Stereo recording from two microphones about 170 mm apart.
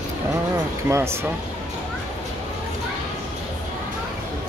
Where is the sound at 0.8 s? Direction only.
15° right (ahead or behind).